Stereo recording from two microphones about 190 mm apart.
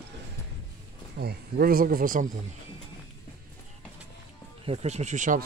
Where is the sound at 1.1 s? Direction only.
55° right (ahead or behind).